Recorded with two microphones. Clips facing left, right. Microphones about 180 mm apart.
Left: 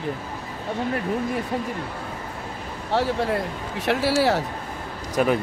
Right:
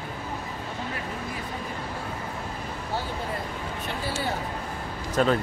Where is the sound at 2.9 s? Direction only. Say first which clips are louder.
Left 10 dB; 90° left.